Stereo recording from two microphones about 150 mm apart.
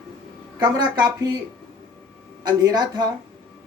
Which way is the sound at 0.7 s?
25° right (ahead or behind).